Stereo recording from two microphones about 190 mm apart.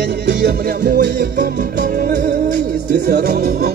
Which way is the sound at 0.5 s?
50° right (ahead or behind).